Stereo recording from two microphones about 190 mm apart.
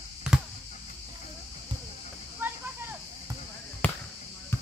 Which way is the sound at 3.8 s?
10° left (ahead or behind).